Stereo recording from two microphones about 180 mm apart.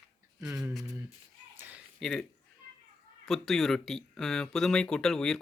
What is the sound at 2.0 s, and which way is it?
Speech, centre (ahead or behind).